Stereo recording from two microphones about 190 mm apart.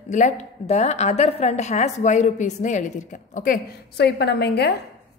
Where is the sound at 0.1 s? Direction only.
40° left (ahead or behind); by 4.7 s 60° left (ahead or behind).